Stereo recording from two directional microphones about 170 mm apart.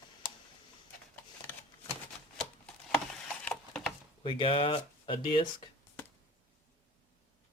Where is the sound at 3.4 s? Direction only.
5° left (ahead or behind).